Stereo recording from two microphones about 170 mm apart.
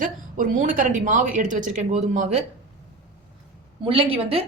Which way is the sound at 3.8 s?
35° right (ahead or behind).